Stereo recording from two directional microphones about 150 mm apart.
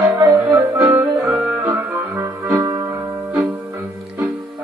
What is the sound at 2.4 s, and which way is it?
Music, 20° right (ahead or behind).